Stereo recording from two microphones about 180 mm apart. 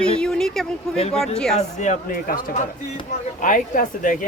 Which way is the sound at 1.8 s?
45° left (ahead or behind).